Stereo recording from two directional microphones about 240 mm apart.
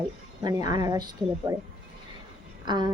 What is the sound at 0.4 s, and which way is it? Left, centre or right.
Speech, centre.